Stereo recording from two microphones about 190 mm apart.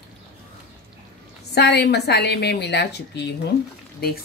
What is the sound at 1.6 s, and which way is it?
A woman's voice, 60° left (ahead or behind).